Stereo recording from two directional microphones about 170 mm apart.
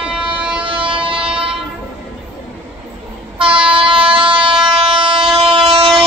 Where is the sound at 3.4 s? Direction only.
30° right (ahead or behind).